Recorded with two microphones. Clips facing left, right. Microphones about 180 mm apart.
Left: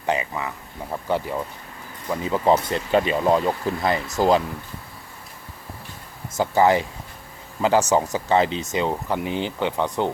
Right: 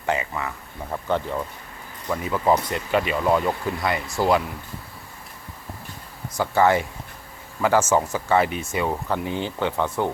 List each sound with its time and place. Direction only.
0.0 s speech: 20° left (ahead or behind)
2.2 s speech: 25° left (ahead or behind)
6.3 s speech: 15° left (ahead or behind)